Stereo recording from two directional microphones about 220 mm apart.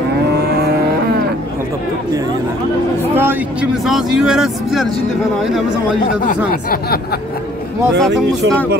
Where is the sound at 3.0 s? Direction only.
10° right (ahead or behind).